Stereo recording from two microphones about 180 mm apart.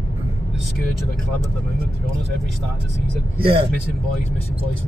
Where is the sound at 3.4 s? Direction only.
30° right (ahead or behind).